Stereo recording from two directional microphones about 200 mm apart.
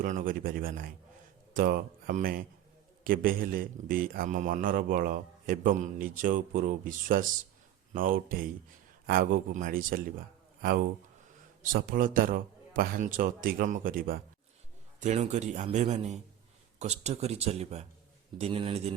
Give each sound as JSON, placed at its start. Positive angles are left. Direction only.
{"t": 0.0, "sound": "a man's voice", "side_deg": -45}
{"t": 11.7, "sound": "a man's voice", "side_deg": -45}